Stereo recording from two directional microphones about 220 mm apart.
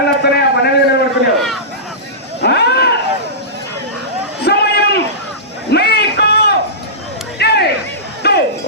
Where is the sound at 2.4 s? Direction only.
50° left (ahead or behind).